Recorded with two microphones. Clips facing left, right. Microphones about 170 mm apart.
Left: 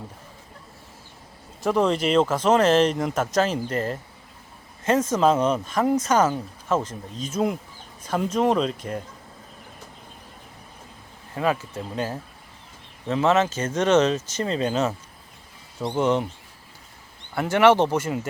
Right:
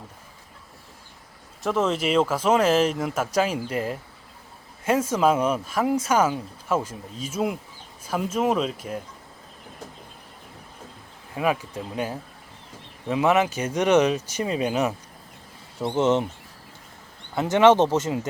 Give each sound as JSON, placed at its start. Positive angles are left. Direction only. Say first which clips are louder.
{"t": 1.6, "sound": "speech", "louder": "left 2 dB", "side_deg": 0}
{"t": 11.3, "sound": "speech", "louder": "even", "side_deg": -10}
{"t": 16.0, "sound": "speech", "louder": "right 1 dB", "side_deg": -20}
{"t": 17.3, "sound": "speech", "louder": "right 1 dB", "side_deg": -20}